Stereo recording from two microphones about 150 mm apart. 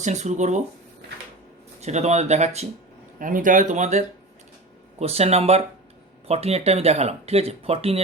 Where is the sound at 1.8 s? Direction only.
50° right (ahead or behind).